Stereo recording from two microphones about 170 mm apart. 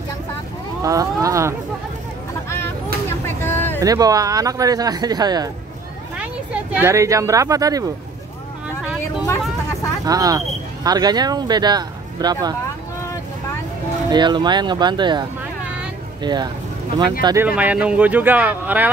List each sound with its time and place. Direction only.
0.8 s speech: 20° right (ahead or behind)
2.5 s vehicle: 15° left (ahead or behind)
3.8 s speech: 20° right (ahead or behind)
6.1 s speech: 10° right (ahead or behind)
10.0 s speech: 20° right (ahead or behind)
14.1 s speech: 25° right (ahead or behind)
17.5 s speech: 10° right (ahead or behind)